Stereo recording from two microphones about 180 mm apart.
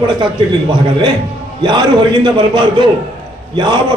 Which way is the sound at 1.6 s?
25° right (ahead or behind).